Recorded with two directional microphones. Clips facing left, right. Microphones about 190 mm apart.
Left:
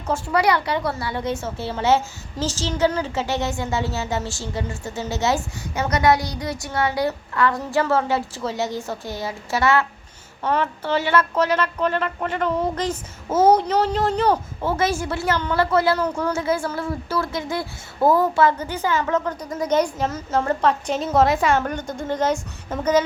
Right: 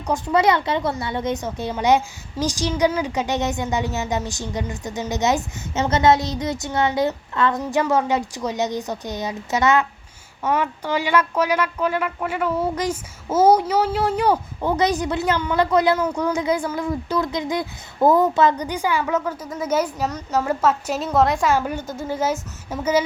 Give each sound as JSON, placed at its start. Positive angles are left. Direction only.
{"t": 0.1, "sound": "a woman's voice", "side_deg": -20}